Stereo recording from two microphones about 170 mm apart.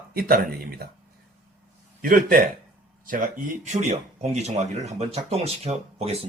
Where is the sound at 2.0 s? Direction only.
55° right (ahead or behind).